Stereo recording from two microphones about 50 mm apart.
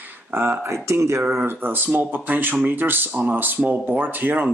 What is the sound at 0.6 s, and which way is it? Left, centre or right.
Speech, right.